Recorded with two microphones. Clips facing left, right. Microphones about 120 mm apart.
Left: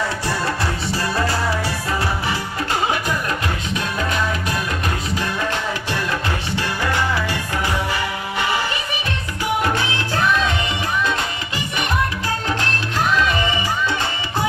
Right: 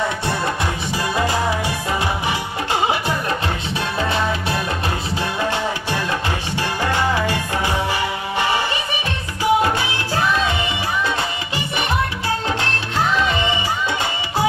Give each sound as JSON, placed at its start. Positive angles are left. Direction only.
{"t": 0.9, "sound": "music", "side_deg": -15}
{"t": 9.4, "sound": "music", "side_deg": -20}
{"t": 13.1, "sound": "music", "side_deg": -20}